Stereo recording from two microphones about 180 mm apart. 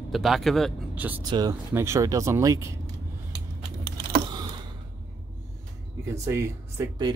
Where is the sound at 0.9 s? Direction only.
10° right (ahead or behind).